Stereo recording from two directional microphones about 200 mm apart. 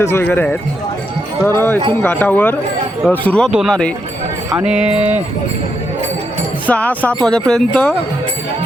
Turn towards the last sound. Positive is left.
turn(degrees=5)  # may be behind; listen again after turning